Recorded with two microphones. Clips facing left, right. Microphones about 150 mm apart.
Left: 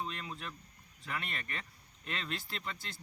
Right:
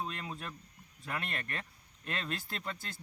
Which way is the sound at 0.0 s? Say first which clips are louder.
Right 1 dB; 45° right (ahead or behind).